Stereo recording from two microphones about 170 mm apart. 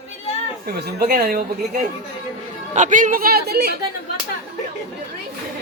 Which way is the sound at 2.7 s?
50° right (ahead or behind).